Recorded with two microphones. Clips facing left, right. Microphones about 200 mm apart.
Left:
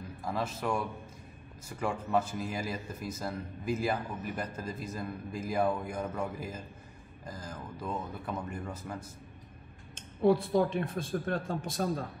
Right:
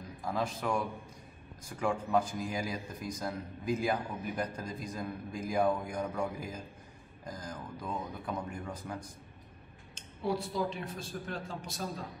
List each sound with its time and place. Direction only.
0.2 s speech: 5° left (ahead or behind)
7.2 s speech: 5° left (ahead or behind)
9.9 s speech: 55° left (ahead or behind)